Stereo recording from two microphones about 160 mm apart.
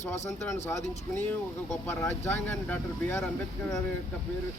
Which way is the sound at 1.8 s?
15° left (ahead or behind).